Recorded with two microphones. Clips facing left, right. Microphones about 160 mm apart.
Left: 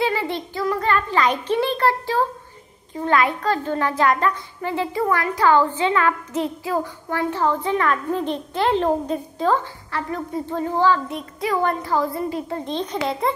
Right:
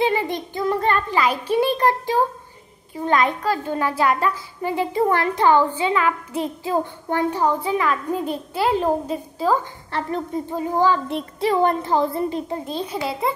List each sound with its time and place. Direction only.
0.0 s child singing: 20° right (ahead or behind)
1.1 s a sound: 10° right (ahead or behind)
2.9 s a child's voice: 20° right (ahead or behind)
5.0 s a child's voice: 25° right (ahead or behind); by 6.5 s 10° right (ahead or behind)
6.6 s a child's voice: 25° right (ahead or behind)
11.1 s a child's voice: 30° right (ahead or behind)
12.6 s a child's voice: 5° right (ahead or behind)